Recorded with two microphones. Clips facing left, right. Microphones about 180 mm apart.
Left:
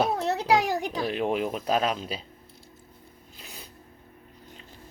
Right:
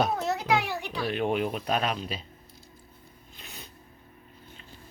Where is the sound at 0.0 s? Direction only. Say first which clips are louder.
Left 2 dB; 30° left (ahead or behind).